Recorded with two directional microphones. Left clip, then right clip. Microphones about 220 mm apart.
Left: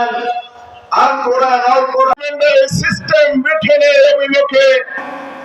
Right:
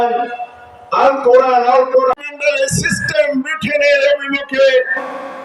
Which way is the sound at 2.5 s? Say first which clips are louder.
Left 3 dB; 40° left (ahead or behind).